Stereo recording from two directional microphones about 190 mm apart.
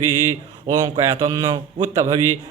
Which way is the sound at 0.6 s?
20° right (ahead or behind).